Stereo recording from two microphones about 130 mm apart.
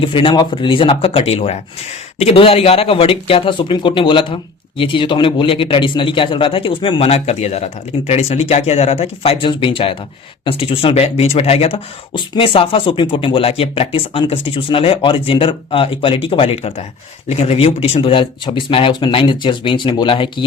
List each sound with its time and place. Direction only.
0.0 s a man's voice: 40° left (ahead or behind)